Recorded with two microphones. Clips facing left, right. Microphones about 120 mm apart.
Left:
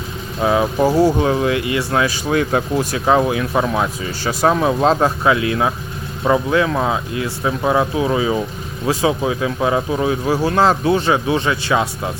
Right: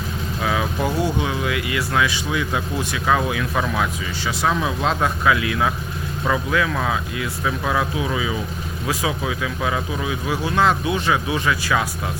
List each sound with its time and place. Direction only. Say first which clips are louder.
0.4 s speech: left 8 dB; 30° left (ahead or behind)
3.1 s speech: left 5 dB; 30° left (ahead or behind)